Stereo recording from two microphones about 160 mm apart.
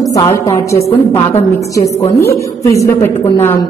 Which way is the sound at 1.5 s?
20° left (ahead or behind).